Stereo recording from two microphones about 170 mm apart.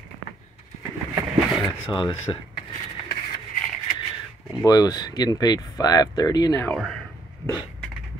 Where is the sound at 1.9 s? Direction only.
30° left (ahead or behind).